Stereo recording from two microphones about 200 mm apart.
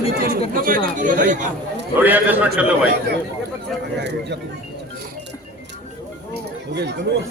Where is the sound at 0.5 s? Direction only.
45° right (ahead or behind).